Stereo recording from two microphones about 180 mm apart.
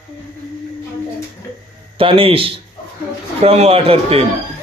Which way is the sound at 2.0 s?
30° right (ahead or behind).